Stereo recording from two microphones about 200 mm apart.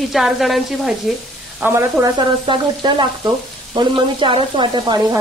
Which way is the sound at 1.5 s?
10° right (ahead or behind).